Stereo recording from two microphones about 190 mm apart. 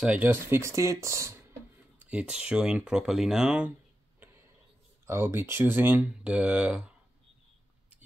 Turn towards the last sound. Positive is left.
turn(degrees=-5)  # may be behind; listen again after turning